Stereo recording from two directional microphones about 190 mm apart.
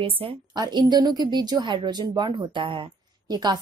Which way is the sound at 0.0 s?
30° right (ahead or behind).